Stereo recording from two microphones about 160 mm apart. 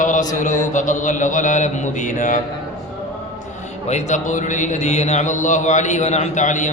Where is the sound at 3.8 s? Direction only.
45° left (ahead or behind).